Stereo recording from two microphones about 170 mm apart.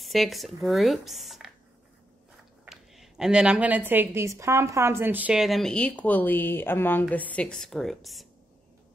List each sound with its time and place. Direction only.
0.0 s a woman's voice: centre (ahead or behind)
2.6 s a woman's voice: centre (ahead or behind)